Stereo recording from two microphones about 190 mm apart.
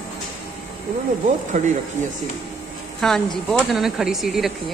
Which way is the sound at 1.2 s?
40° right (ahead or behind).